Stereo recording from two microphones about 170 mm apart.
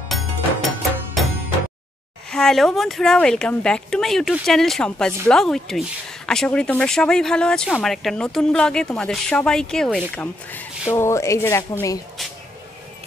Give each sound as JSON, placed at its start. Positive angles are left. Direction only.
{"t": 0.1, "sound": "music", "side_deg": 0}
{"t": 2.3, "sound": "speech", "side_deg": 0}